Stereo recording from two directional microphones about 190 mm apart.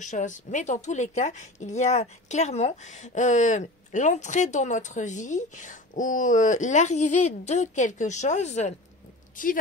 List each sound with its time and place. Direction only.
0.0 s speech: 40° left (ahead or behind)